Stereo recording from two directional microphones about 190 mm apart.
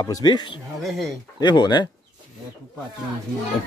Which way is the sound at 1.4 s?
25° left (ahead or behind).